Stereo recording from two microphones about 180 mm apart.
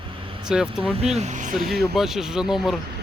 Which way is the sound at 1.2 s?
40° right (ahead or behind).